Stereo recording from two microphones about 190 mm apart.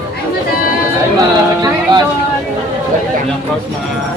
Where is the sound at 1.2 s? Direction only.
20° right (ahead or behind).